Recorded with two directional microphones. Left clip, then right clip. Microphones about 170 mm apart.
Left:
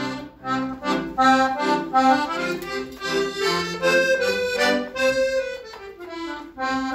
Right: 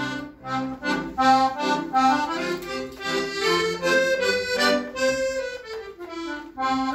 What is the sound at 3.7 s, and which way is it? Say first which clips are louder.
Accordion: left 2 dB; 15° right (ahead or behind).